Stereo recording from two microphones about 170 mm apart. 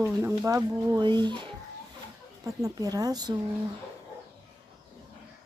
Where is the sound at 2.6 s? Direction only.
20° right (ahead or behind).